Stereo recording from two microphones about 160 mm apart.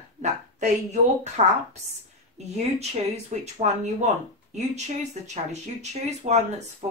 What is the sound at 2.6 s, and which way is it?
A woman's voice, 40° right (ahead or behind).